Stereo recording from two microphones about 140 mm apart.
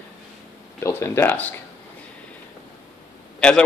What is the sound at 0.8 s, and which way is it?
Speech, 15° left (ahead or behind).